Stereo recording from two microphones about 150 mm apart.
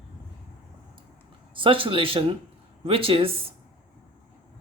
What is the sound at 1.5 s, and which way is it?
Speech, 35° right (ahead or behind).